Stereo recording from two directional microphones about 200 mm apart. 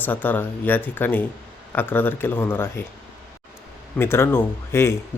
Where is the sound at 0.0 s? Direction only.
10° left (ahead or behind).